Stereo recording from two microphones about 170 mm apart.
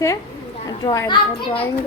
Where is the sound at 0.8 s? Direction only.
25° left (ahead or behind).